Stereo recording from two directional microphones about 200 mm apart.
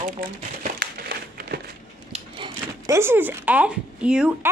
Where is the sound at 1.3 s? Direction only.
50° right (ahead or behind).